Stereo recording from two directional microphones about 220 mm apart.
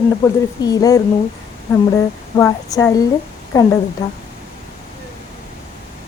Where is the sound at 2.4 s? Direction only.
15° left (ahead or behind).